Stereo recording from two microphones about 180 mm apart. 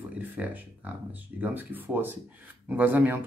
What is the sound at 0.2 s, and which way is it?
Speech, 10° right (ahead or behind).